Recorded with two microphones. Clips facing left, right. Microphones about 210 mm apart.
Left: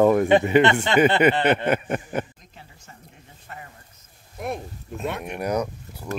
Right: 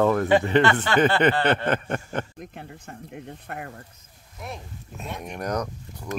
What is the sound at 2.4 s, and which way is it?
Speech, 60° right (ahead or behind).